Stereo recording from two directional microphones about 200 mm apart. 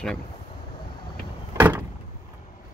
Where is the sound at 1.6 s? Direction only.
10° right (ahead or behind).